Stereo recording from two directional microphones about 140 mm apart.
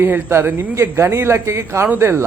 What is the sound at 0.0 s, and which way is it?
A man's voice, 15° right (ahead or behind).